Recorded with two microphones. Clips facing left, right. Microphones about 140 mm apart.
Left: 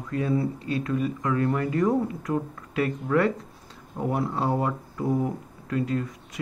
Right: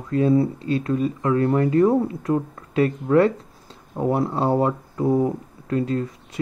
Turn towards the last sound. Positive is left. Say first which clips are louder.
# right 4 dB
turn(degrees=-30)  # may be behind; listen again after turning